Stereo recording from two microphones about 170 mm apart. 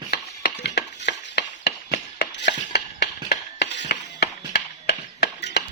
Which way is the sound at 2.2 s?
90° left.